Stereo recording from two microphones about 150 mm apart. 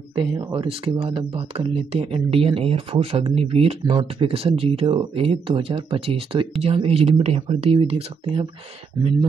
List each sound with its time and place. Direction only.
0.1 s speech: 35° right (ahead or behind)